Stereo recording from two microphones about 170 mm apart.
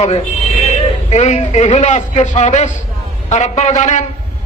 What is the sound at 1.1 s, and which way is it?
A man's voice, 40° left (ahead or behind).